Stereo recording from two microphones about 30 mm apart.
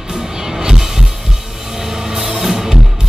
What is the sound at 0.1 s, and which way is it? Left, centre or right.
Music, centre.